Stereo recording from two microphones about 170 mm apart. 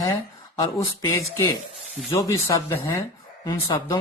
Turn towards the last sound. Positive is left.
turn(degrees=20)  # may be behind; listen again after turning